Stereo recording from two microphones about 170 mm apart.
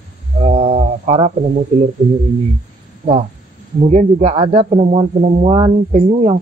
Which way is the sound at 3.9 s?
40° right (ahead or behind).